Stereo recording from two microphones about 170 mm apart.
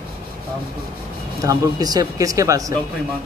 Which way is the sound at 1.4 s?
20° right (ahead or behind).